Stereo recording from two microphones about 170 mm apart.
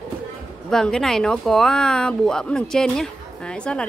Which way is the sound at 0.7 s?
5° left (ahead or behind).